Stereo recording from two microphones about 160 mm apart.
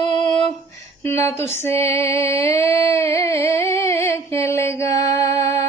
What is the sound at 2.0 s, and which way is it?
Music, 15° left (ahead or behind).